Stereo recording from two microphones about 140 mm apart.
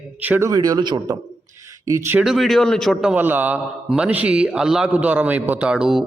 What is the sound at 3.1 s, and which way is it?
A man's voice, 10° right (ahead or behind).